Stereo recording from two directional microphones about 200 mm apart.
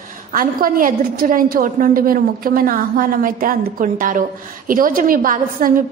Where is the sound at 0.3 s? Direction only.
45° right (ahead or behind).